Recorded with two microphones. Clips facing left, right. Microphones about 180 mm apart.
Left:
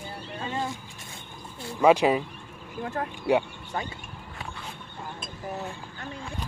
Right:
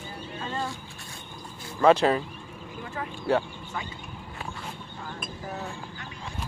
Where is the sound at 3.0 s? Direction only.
45° left (ahead or behind).